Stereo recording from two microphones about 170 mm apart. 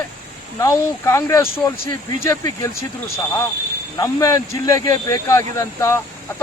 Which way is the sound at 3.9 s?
20° left (ahead or behind).